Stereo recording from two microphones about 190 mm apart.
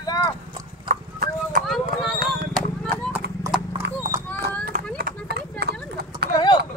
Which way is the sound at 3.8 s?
65° right (ahead or behind).